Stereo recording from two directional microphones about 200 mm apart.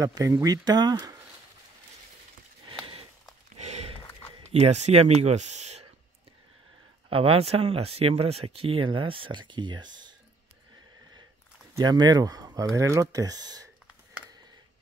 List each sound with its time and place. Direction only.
0.0 s speech: 15° right (ahead or behind)
2.8 s a sound: 30° right (ahead or behind)
4.5 s speech: 30° right (ahead or behind)
7.1 s speech: 30° right (ahead or behind)
11.7 s speech: 20° right (ahead or behind)